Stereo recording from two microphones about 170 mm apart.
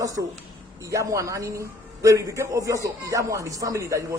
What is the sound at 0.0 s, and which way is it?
A man's voice, 20° right (ahead or behind).